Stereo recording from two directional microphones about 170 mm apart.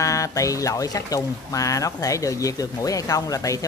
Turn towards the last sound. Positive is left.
turn(degrees=20)  # may be behind; listen again after turning